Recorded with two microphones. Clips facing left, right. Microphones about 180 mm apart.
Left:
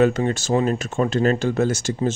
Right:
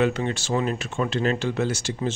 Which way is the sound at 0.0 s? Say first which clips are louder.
Left 5 dB; 45° left (ahead or behind).